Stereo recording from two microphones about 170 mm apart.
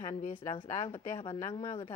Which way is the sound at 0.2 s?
45° left (ahead or behind).